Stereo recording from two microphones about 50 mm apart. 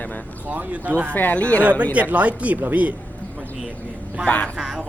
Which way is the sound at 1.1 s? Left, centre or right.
Left.